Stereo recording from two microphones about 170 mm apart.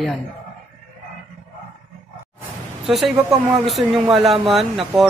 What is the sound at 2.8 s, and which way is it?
Speech, centre (ahead or behind).